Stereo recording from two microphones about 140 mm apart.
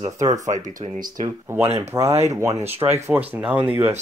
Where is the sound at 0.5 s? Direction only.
70° right (ahead or behind).